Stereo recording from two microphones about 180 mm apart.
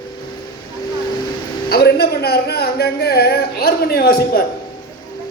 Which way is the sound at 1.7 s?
60° left (ahead or behind).